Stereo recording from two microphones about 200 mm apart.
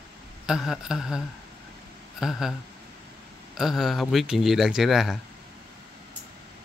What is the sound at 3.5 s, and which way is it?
Speech, centre (ahead or behind).